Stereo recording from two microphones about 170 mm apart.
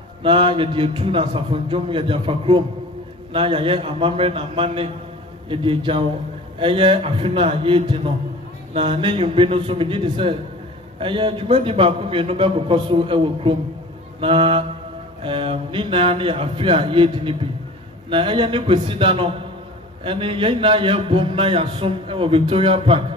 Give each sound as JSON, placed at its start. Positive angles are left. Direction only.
{"t": 0.2, "sound": "a man's voice", "side_deg": -30}